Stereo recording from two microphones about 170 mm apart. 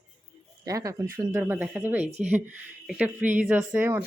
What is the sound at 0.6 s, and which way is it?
Speech, 20° right (ahead or behind).